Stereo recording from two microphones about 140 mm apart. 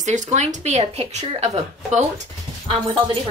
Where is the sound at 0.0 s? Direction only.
60° right (ahead or behind).